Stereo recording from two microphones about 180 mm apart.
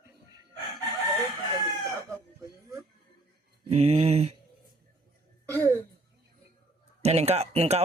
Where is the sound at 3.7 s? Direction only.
35° right (ahead or behind).